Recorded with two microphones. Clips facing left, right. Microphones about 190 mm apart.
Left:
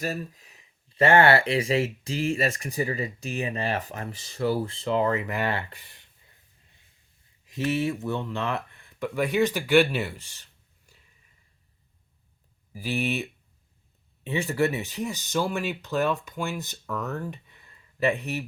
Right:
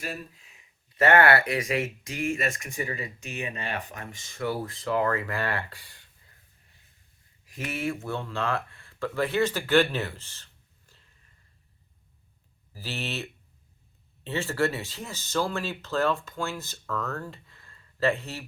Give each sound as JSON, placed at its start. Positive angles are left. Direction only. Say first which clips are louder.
{"t": 0.0, "sound": "speech", "louder": "left 5 dB", "side_deg": 40}
{"t": 7.4, "sound": "speech", "louder": "left 5 dB", "side_deg": 20}
{"t": 12.7, "sound": "speech", "louder": "left 7 dB", "side_deg": 15}